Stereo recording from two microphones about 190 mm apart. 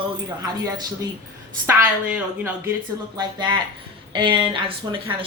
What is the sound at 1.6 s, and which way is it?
Speech, 5° right (ahead or behind).